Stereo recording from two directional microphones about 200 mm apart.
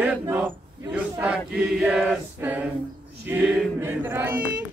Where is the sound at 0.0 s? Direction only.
10° right (ahead or behind).